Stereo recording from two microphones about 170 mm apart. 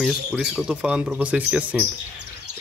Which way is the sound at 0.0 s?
Centre (ahead or behind).